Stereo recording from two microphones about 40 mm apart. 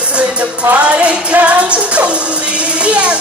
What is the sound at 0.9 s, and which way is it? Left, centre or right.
Music, right.